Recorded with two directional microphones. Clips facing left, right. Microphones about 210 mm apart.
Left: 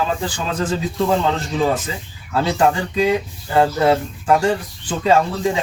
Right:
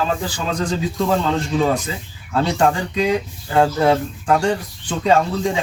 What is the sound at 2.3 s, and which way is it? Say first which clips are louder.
Speech: even; 5° left (ahead or behind).